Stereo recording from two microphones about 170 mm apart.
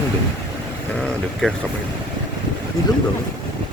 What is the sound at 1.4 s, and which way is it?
Speech, 5° left (ahead or behind).